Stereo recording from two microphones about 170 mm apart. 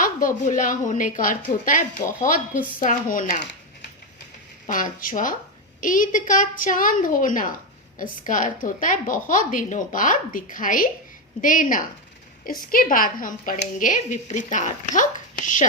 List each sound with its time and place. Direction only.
0.0 s a woman's voice: 50° left (ahead or behind)
4.6 s a woman's voice: 50° left (ahead or behind)